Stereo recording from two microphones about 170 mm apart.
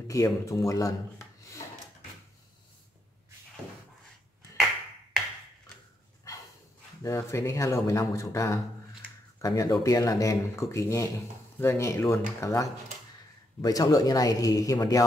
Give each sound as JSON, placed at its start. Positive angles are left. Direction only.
{"t": 0.1, "sound": "a man's voice", "side_deg": 20}
{"t": 7.0, "sound": "speech", "side_deg": 15}